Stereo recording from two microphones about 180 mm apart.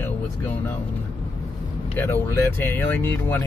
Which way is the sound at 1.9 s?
15° left (ahead or behind).